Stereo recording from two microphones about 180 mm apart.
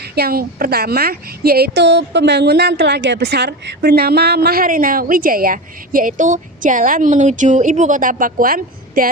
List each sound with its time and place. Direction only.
0.0 s a woman's voice: 60° right (ahead or behind)